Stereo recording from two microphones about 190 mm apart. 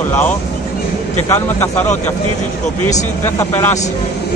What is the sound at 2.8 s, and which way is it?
Speech, 10° left (ahead or behind).